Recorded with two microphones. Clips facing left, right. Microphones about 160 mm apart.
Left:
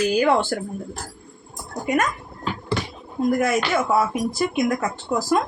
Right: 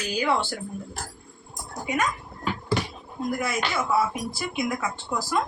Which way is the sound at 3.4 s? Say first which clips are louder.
Left 7 dB; 50° left (ahead or behind).